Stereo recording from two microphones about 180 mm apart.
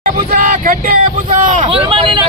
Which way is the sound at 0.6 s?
50° right (ahead or behind).